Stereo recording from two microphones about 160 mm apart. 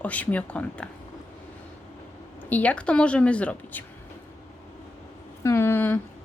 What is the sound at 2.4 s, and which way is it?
Speech, 10° left (ahead or behind).